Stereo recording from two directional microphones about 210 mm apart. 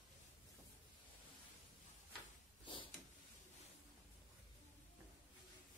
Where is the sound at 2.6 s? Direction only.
25° left (ahead or behind).